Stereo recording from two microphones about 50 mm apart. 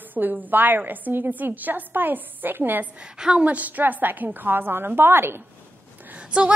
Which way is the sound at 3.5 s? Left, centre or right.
Right.